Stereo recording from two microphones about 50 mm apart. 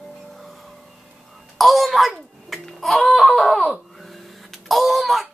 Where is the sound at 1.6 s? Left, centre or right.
Centre.